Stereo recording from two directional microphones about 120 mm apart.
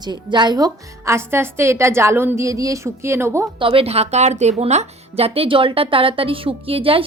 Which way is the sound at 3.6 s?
50° right (ahead or behind).